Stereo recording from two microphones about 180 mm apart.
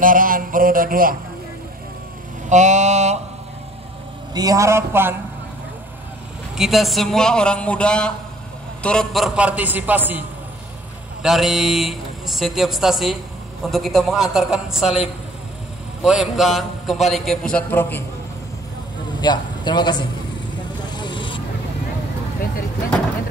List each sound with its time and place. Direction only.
0.0 s a sound: 50° right (ahead or behind)
2.5 s a sound: 40° right (ahead or behind)
4.3 s a man's voice: 20° right (ahead or behind)
6.5 s a man's voice: centre (ahead or behind)
11.2 s a man's voice: centre (ahead or behind)
19.2 s a man's voice: 25° left (ahead or behind)
20.9 s vehicle: 25° left (ahead or behind)